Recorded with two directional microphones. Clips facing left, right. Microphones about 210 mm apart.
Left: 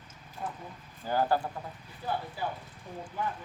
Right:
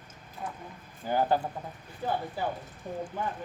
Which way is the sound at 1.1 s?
20° right (ahead or behind).